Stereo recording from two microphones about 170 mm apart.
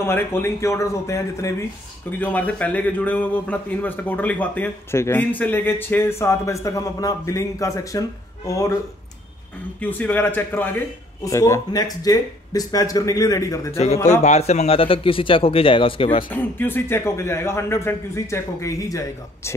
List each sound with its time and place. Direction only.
0.0 s a man's voice: 15° left (ahead or behind)
9.8 s a man's voice: 10° left (ahead or behind)
14.2 s speech: 40° left (ahead or behind)
16.3 s a man's voice: 10° left (ahead or behind)